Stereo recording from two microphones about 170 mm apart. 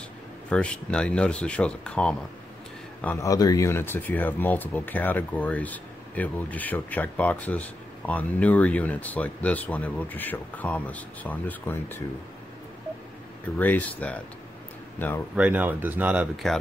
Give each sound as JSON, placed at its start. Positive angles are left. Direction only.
{"t": 0.5, "sound": "a man's voice", "side_deg": 5}
{"t": 3.3, "sound": "speech", "side_deg": 20}
{"t": 13.6, "sound": "speech", "side_deg": 10}
{"t": 15.3, "sound": "speech", "side_deg": -10}